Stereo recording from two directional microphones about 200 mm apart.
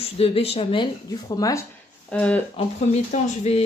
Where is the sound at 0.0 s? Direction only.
30° left (ahead or behind); by 2.4 s 5° left (ahead or behind).